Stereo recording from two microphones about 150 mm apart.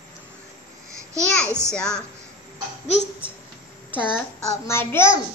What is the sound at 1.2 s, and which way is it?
Speech, 5° left (ahead or behind).